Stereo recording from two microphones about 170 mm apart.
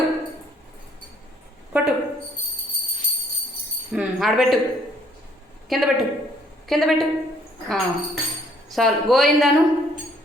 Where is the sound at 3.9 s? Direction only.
Centre (ahead or behind).